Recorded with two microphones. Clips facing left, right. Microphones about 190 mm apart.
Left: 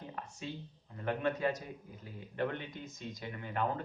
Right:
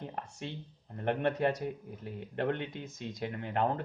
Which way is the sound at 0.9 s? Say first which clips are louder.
Right 4 dB; 60° right (ahead or behind).